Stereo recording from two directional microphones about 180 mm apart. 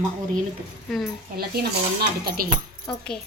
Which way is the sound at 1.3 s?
60° right (ahead or behind).